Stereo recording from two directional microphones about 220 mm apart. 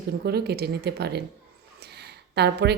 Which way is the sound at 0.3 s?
45° right (ahead or behind).